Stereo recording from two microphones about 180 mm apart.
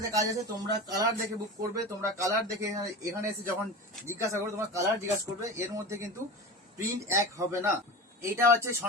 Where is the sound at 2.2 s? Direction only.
15° right (ahead or behind).